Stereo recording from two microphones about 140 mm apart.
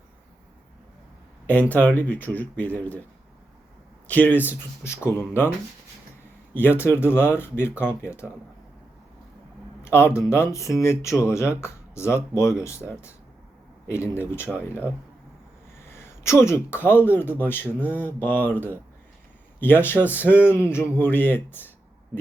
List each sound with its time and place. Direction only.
1.5 s speech: 10° left (ahead or behind)
4.0 s speech: 10° left (ahead or behind)
6.5 s speech: 15° left (ahead or behind)
9.8 s a sound: 15° left (ahead or behind)
10.2 s speech: 20° left (ahead or behind)
13.8 s speech: 20° left (ahead or behind)
16.2 s speech: 20° left (ahead or behind)